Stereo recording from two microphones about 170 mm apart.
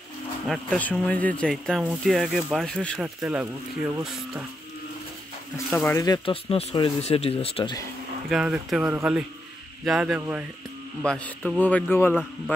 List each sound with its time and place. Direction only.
0.5 s speech: 5° left (ahead or behind)
3.0 s speech: 5° right (ahead or behind)
5.7 s speech: 10° left (ahead or behind)
6.0 s speech: 30° left (ahead or behind)
8.3 s speech: 5° right (ahead or behind)
11.1 s speech: 5° left (ahead or behind)